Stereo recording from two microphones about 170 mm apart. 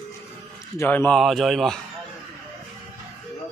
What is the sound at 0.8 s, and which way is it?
Speech, 10° left (ahead or behind).